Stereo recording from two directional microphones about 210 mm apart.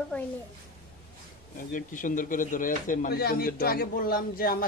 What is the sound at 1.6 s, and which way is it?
Speech, 40° left (ahead or behind).